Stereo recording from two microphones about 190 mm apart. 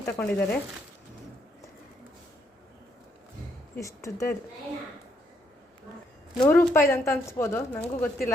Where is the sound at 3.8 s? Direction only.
15° left (ahead or behind).